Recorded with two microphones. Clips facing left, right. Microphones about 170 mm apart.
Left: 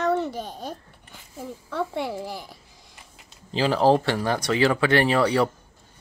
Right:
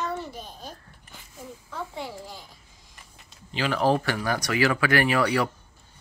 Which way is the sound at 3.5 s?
30° left (ahead or behind).